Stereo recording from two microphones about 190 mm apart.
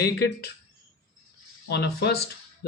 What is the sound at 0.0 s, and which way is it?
Speech, 55° left (ahead or behind).